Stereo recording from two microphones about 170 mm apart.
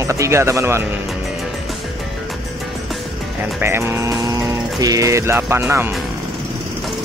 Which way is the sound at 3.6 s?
15° right (ahead or behind).